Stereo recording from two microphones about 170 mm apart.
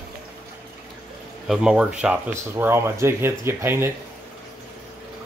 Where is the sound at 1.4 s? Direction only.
Centre (ahead or behind).